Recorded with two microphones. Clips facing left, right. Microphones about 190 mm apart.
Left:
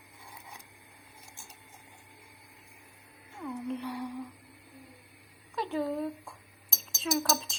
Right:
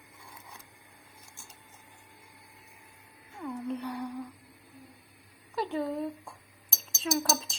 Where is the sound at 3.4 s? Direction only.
Centre (ahead or behind).